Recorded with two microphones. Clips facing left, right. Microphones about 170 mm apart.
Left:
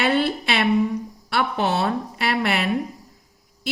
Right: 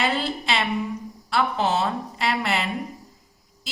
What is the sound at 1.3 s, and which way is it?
A woman's voice, 65° left (ahead or behind).